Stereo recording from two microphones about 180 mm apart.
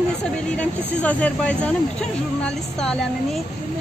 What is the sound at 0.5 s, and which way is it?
Speech, 10° left (ahead or behind).